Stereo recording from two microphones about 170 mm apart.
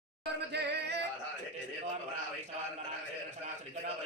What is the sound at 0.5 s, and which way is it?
Singing, 80° right.